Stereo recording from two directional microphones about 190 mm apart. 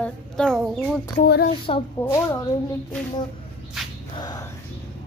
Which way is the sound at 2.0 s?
10° left (ahead or behind).